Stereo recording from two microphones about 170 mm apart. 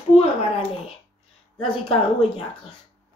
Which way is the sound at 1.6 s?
30° left (ahead or behind).